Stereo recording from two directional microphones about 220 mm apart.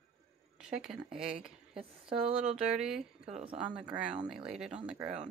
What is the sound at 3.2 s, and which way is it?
Speech, 25° right (ahead or behind).